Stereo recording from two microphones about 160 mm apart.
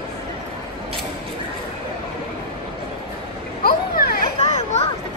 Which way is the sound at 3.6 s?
70° left (ahead or behind).